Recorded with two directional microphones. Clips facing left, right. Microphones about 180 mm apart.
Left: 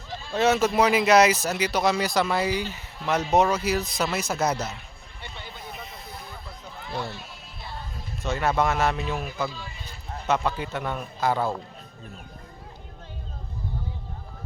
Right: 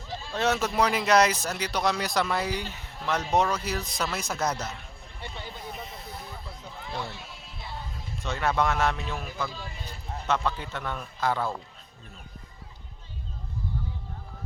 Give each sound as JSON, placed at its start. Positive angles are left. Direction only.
{"t": 0.3, "sound": "speech", "side_deg": 5}
{"t": 5.2, "sound": "a sound", "side_deg": -35}
{"t": 5.7, "sound": "snake", "side_deg": 10}
{"t": 7.6, "sound": "music", "side_deg": -15}
{"t": 8.2, "sound": "speech", "side_deg": 5}
{"t": 9.5, "sound": "speech", "side_deg": -50}
{"t": 10.2, "sound": "a man's voice", "side_deg": 10}